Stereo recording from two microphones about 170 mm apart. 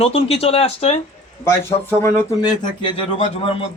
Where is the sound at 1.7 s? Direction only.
25° left (ahead or behind).